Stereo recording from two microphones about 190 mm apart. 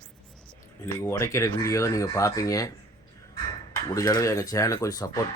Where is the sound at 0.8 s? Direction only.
20° left (ahead or behind).